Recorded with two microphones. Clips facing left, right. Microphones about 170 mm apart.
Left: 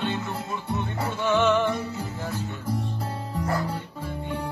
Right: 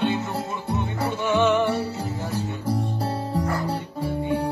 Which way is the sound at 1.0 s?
15° right (ahead or behind).